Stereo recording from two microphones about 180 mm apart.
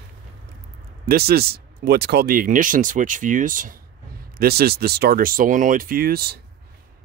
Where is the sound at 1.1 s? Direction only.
60° right (ahead or behind).